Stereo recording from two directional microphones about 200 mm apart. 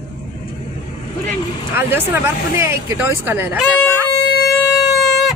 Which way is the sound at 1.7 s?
10° right (ahead or behind).